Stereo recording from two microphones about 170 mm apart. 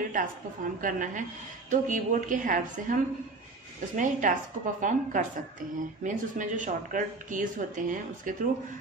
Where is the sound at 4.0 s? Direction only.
50° right (ahead or behind).